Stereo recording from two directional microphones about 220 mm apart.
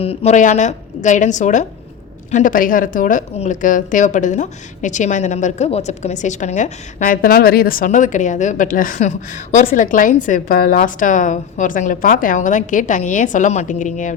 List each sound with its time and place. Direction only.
0.0 s a woman's voice: 25° left (ahead or behind)